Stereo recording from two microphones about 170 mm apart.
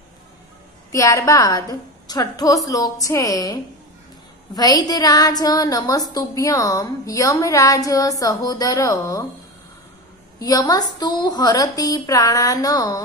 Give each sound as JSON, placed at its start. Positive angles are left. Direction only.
{"t": 0.9, "sound": "a woman's voice", "side_deg": 20}
{"t": 4.6, "sound": "a woman's voice", "side_deg": 20}
{"t": 10.4, "sound": "a woman's voice", "side_deg": 20}